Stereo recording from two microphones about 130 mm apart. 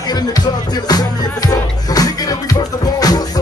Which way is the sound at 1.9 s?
30° left (ahead or behind).